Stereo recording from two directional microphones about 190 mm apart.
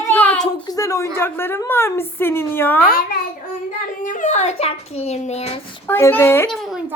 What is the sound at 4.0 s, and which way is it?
A child's voice, 40° left (ahead or behind).